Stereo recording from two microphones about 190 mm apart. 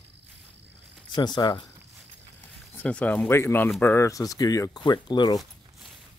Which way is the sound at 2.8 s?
5° left (ahead or behind).